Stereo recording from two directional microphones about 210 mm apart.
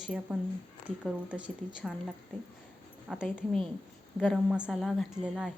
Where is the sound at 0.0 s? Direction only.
5° right (ahead or behind).